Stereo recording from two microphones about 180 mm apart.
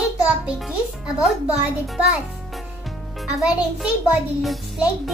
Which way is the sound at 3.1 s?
Centre (ahead or behind).